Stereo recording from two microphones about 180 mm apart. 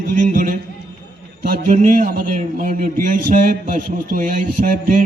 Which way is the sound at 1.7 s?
45° right (ahead or behind).